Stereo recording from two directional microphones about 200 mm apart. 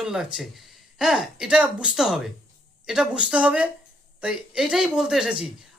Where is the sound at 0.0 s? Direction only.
5° right (ahead or behind).